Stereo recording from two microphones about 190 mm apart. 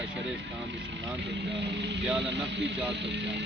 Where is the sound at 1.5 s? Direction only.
65° right (ahead or behind).